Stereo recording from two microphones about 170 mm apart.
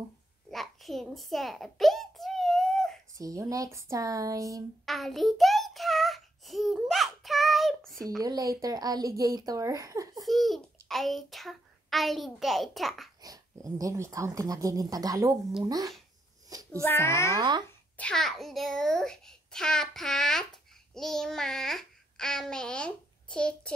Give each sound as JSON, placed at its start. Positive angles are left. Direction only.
{"t": 0.5, "sound": "a sound", "side_deg": 0}
{"t": 3.2, "sound": "speech", "side_deg": -20}
{"t": 4.8, "sound": "child singing", "side_deg": 0}
{"t": 8.2, "sound": "speech", "side_deg": -20}
{"t": 10.2, "sound": "a child's voice", "side_deg": 0}
{"t": 13.2, "sound": "speech", "side_deg": -20}
{"t": 16.4, "sound": "a sound", "side_deg": -20}
{"t": 16.8, "sound": "a child's voice", "side_deg": 15}
{"t": 17.4, "sound": "speech", "side_deg": -25}
{"t": 17.9, "sound": "a child's voice", "side_deg": 5}
{"t": 20.9, "sound": "babbling", "side_deg": 0}